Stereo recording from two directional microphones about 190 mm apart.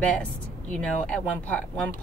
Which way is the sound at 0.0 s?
5° left (ahead or behind).